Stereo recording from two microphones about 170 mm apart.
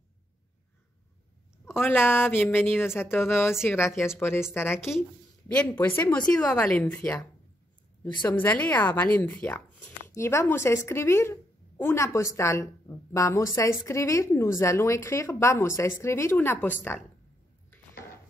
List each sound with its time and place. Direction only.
1.7 s a woman's voice: 15° left (ahead or behind)
5.8 s a woman's voice: 15° left (ahead or behind)
8.3 s a woman's voice: 10° left (ahead or behind)